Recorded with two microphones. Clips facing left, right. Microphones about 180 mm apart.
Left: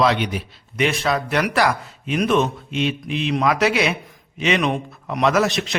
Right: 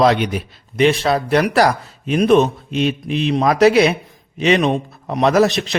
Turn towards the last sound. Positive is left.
turn(degrees=-35)  # may be behind; listen again after turning